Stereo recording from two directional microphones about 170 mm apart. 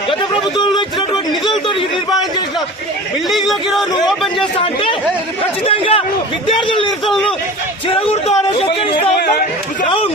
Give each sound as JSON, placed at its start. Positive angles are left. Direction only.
{"t": 0.1, "sound": "speech", "side_deg": 25}
{"t": 3.2, "sound": "speech", "side_deg": 0}
{"t": 4.6, "sound": "speech", "side_deg": 35}
{"t": 7.0, "sound": "speech", "side_deg": 5}
{"t": 7.9, "sound": "speech", "side_deg": 35}